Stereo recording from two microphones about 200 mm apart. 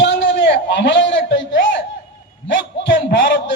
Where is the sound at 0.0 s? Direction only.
60° left (ahead or behind).